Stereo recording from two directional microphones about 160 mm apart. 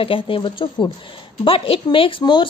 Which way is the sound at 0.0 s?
35° left (ahead or behind).